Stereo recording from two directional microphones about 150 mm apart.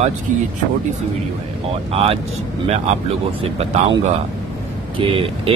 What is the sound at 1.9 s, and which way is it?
Speech, 40° right (ahead or behind).